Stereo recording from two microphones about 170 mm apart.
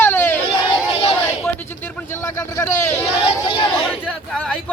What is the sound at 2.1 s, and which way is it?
Speech, 15° left (ahead or behind).